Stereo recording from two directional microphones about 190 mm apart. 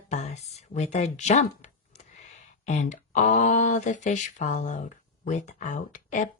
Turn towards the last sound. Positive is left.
turn(degrees=40)  # may be behind; listen again after turning